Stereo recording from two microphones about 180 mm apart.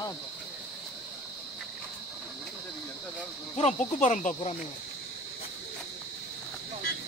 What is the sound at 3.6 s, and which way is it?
Cricket, 40° left (ahead or behind).